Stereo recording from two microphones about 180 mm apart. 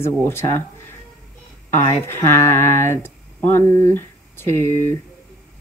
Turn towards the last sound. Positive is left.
turn(degrees=15)  # may be behind; listen again after turning